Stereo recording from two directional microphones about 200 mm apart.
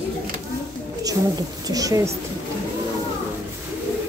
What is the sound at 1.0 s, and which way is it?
A woman's voice, 20° right (ahead or behind).